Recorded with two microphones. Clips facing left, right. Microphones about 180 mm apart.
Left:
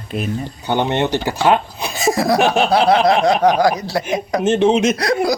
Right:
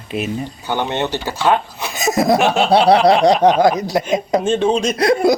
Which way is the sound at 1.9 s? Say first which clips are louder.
Right 1 dB; 20° right (ahead or behind).